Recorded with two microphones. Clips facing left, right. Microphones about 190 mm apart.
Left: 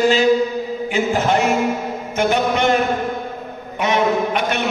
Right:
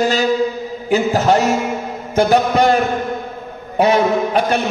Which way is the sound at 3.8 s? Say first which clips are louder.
Right 4 dB; 35° right (ahead or behind).